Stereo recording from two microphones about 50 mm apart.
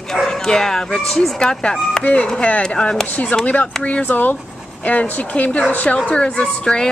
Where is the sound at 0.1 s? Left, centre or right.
Centre.